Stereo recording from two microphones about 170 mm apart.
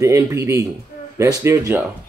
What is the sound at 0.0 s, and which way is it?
A man's voice, 15° right (ahead or behind).